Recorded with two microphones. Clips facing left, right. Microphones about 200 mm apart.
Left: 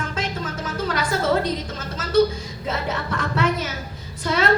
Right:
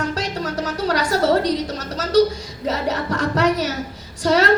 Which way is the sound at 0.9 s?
40° right (ahead or behind).